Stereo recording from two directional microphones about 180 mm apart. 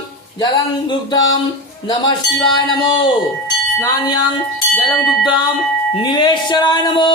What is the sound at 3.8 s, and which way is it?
Speech, 20° left (ahead or behind).